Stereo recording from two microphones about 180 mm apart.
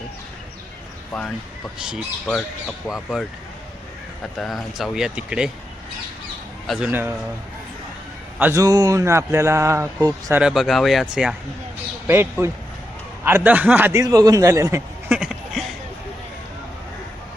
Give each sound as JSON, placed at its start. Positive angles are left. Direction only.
{"t": 1.8, "sound": "speech", "side_deg": 0}
{"t": 4.4, "sound": "speech", "side_deg": 0}
{"t": 6.7, "sound": "speech", "side_deg": -5}
{"t": 8.4, "sound": "speech", "side_deg": -15}
{"t": 10.4, "sound": "speech", "side_deg": 0}
{"t": 15.2, "sound": "a sound", "side_deg": -5}